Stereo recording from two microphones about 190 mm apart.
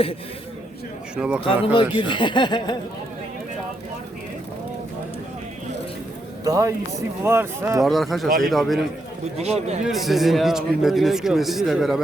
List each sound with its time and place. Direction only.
1.1 s speech: 5° right (ahead or behind)
1.7 s speech: 25° left (ahead or behind)
6.4 s speech: 15° right (ahead or behind)
7.8 s speech: centre (ahead or behind)
9.4 s speech: 35° right (ahead or behind)
9.8 s speech: centre (ahead or behind)